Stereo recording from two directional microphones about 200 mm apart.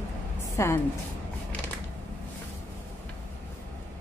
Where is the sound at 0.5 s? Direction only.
10° left (ahead or behind).